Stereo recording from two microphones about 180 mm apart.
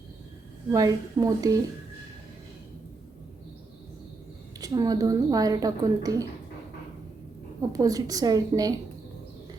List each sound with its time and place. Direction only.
0.7 s a woman's voice: 20° right (ahead or behind)
4.6 s a woman's voice: 20° right (ahead or behind)
7.7 s a woman's voice: 20° right (ahead or behind)